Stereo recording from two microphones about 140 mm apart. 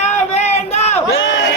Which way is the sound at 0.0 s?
50° left (ahead or behind).